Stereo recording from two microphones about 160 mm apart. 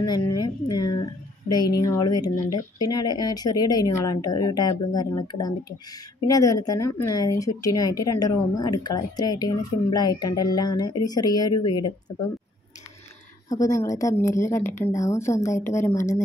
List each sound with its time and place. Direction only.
0.0 s speech: 25° left (ahead or behind)
13.5 s speech: 20° left (ahead or behind)